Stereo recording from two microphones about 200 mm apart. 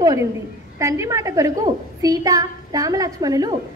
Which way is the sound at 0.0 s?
15° right (ahead or behind).